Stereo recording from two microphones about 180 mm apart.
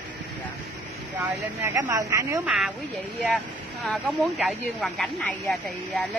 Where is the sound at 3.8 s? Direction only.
Centre (ahead or behind).